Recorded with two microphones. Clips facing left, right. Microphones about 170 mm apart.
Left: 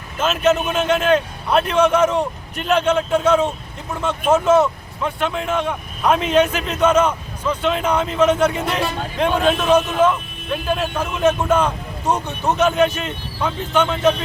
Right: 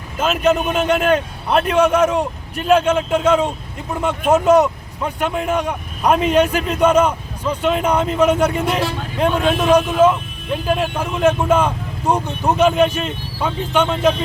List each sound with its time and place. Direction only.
0.2 s speech: 10° right (ahead or behind)